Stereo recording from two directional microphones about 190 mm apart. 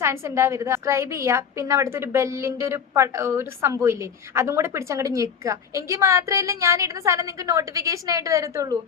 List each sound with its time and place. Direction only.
0.0 s a woman's voice: 15° right (ahead or behind)